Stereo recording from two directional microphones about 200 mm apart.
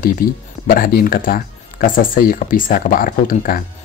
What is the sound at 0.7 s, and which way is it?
Speech, 50° left (ahead or behind).